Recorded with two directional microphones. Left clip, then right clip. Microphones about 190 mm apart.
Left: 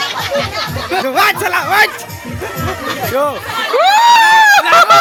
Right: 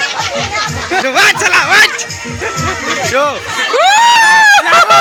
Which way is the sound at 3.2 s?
5° left (ahead or behind).